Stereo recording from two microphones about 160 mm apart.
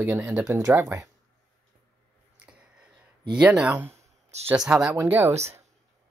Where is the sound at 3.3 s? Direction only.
5° right (ahead or behind).